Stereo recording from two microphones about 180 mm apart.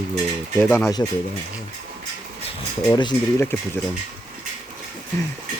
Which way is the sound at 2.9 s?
25° left (ahead or behind).